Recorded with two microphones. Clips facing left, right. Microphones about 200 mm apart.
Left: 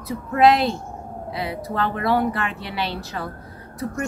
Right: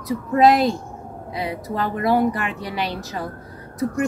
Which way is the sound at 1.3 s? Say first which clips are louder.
Right 1 dB; 15° right (ahead or behind).